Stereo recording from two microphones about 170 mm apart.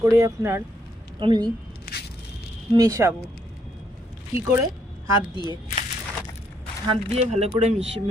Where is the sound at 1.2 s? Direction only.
25° right (ahead or behind).